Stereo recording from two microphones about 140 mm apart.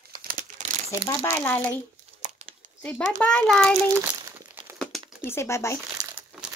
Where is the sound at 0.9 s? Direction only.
20° left (ahead or behind).